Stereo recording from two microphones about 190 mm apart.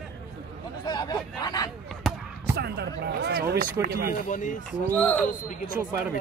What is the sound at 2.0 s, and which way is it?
Basketball bounce, centre (ahead or behind).